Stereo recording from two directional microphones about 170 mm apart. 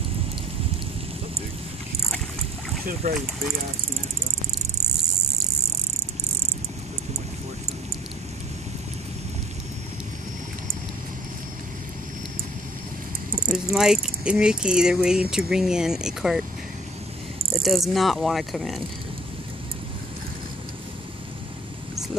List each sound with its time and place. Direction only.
3.0 s speech: 40° right (ahead or behind)
13.5 s mechanisms: centre (ahead or behind)
17.6 s mechanisms: centre (ahead or behind)